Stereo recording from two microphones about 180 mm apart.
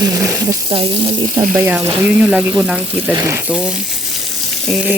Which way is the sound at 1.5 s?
10° right (ahead or behind).